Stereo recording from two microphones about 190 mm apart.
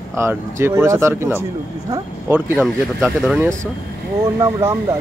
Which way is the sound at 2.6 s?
Centre (ahead or behind).